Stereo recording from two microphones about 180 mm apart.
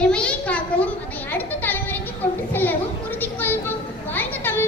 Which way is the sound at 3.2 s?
10° left (ahead or behind).